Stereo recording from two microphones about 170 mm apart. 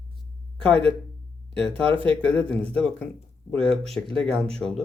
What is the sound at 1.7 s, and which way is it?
Speech, 30° right (ahead or behind).